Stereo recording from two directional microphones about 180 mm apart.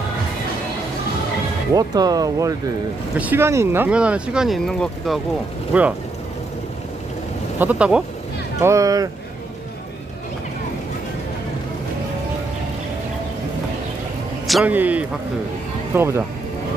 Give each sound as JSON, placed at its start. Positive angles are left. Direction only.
{"t": 1.7, "sound": "speech", "side_deg": -20}
{"t": 7.5, "sound": "speech", "side_deg": -10}
{"t": 14.5, "sound": "speech", "side_deg": -10}